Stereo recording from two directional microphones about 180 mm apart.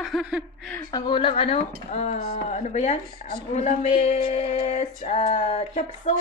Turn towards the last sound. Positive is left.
turn(degrees=40)  # may be behind; listen again after turning